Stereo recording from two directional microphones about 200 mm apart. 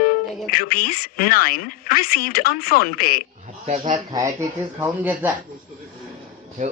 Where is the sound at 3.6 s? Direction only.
30° right (ahead or behind).